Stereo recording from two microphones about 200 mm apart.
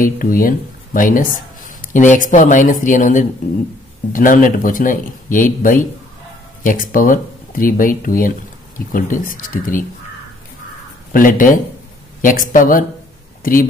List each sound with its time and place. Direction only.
0.0 s speech: 45° left (ahead or behind)
11.1 s speech: 45° left (ahead or behind)